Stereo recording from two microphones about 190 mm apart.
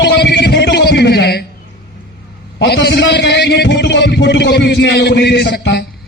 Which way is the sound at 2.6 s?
60° left (ahead or behind).